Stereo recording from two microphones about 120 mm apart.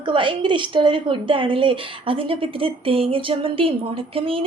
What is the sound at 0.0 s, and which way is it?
A woman's voice, 45° right (ahead or behind).